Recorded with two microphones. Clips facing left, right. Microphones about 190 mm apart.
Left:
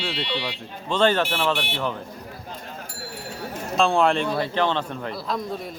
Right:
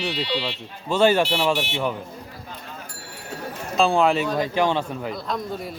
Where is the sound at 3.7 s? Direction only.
Centre (ahead or behind).